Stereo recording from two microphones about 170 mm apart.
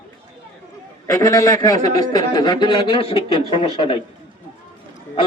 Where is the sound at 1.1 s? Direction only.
20° left (ahead or behind).